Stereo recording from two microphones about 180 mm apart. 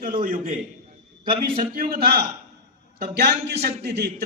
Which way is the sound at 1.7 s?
55° right (ahead or behind).